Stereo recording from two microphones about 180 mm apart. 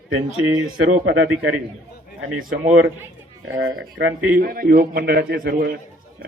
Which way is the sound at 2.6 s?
45° right (ahead or behind).